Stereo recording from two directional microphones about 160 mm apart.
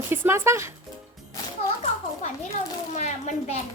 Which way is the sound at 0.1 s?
15° right (ahead or behind).